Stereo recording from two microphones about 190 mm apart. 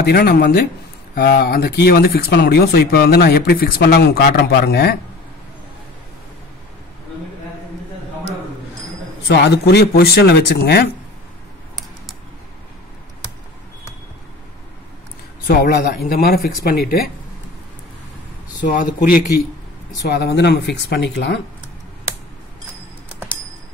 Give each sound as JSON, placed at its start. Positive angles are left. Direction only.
{"t": 0.0, "sound": "speech", "side_deg": 55}
{"t": 9.3, "sound": "speech", "side_deg": 60}
{"t": 15.4, "sound": "speech", "side_deg": 55}
{"t": 18.6, "sound": "speech", "side_deg": 45}
{"t": 20.1, "sound": "speech", "side_deg": 60}